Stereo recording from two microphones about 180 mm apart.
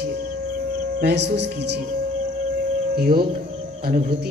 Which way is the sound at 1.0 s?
65° right (ahead or behind).